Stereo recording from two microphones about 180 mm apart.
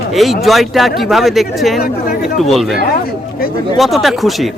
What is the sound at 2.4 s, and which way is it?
Speech, centre (ahead or behind).